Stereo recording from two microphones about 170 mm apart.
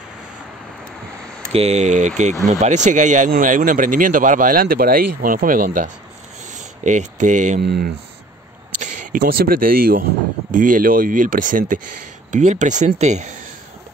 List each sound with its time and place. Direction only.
1.5 s speech: 35° right (ahead or behind)
7.6 s speech: 70° right (ahead or behind)
8.7 s speech: 45° right (ahead or behind)